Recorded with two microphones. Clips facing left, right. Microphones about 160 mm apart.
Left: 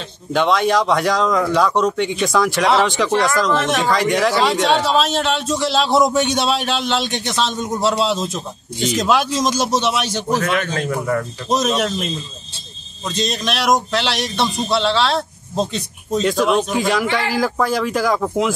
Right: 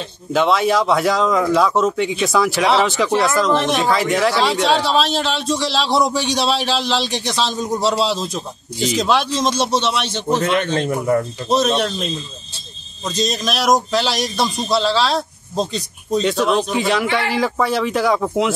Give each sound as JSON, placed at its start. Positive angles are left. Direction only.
{"t": 0.3, "sound": "speech", "side_deg": -5}
{"t": 10.2, "sound": "speech", "side_deg": -25}
{"t": 11.6, "sound": "speech", "side_deg": 5}
{"t": 13.1, "sound": "speech", "side_deg": 0}